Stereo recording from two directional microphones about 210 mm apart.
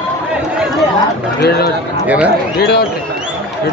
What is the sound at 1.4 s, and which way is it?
Run, 50° left (ahead or behind).